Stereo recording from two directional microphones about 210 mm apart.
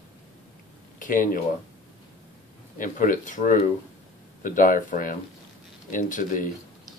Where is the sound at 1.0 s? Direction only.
40° left (ahead or behind).